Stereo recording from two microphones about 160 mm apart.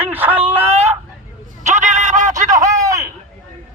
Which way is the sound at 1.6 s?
50° right (ahead or behind).